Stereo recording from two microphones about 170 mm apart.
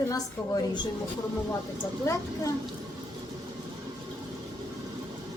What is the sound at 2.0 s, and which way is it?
Speech, 20° left (ahead or behind).